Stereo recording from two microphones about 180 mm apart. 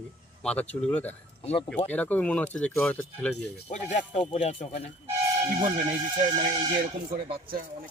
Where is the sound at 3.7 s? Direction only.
40° left (ahead or behind).